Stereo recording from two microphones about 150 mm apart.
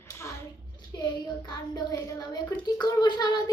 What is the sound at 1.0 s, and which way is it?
A child's voice, 30° left (ahead or behind).